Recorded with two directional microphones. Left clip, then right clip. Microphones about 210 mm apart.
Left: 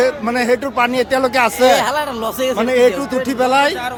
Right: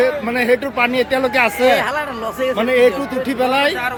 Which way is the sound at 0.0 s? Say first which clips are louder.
Left 1 dB; 10° left (ahead or behind).